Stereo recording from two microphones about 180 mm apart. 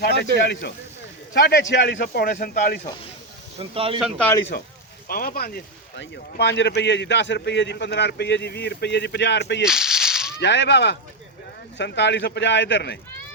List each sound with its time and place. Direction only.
0.0 s speech: 65° left (ahead or behind)
1.3 s speech: 60° left (ahead or behind)
1.7 s speech: 75° left (ahead or behind)
2.2 s speech: 55° left (ahead or behind)
3.6 s speech: 30° right (ahead or behind)
4.5 s speech: 60° left (ahead or behind)
9.6 s a sound: 5° right (ahead or behind)
10.4 s whip: 80° left
11.8 s speech: 75° left (ahead or behind)